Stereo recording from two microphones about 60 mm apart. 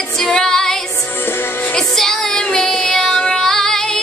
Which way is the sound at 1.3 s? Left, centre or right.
Left.